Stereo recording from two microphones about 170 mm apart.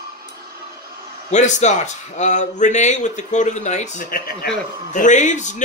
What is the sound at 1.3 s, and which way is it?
Speech, 45° left (ahead or behind).